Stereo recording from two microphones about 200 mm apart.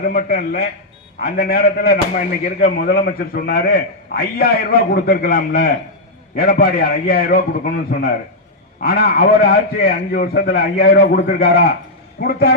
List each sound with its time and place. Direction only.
0.0 s a man's voice: 50° left (ahead or behind)